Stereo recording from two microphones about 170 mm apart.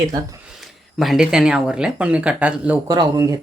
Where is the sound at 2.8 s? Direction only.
25° right (ahead or behind).